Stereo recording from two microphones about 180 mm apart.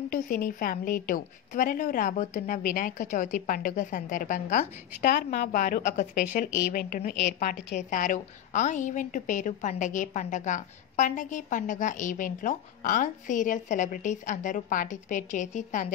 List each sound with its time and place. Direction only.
0.1 s a woman's voice: 50° left (ahead or behind)
5.1 s a woman's voice: 55° left (ahead or behind)